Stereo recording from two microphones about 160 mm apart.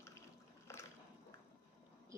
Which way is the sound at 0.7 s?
15° left (ahead or behind).